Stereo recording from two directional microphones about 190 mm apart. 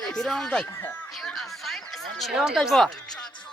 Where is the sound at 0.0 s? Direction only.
Centre (ahead or behind).